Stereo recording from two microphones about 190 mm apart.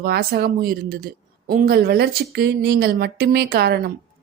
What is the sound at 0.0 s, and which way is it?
A woman's voice, 50° right (ahead or behind).